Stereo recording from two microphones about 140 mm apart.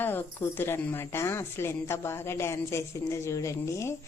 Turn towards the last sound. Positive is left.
turn(degrees=20)  # may be behind; listen again after turning